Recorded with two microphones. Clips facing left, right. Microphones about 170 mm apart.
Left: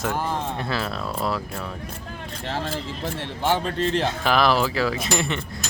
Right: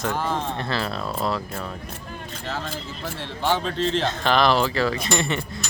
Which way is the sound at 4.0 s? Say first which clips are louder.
Right 1 dB; 5° left (ahead or behind).